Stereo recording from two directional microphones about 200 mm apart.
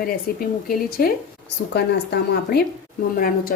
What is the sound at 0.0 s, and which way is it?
Speech, 45° left (ahead or behind).